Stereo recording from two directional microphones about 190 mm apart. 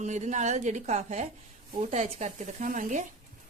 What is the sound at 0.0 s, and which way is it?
Speech, 40° right (ahead or behind).